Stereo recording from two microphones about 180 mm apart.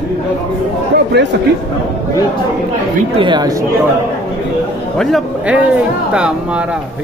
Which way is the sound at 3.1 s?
25° right (ahead or behind).